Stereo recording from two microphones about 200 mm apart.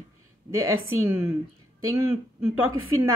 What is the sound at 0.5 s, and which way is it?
Speech, 15° right (ahead or behind).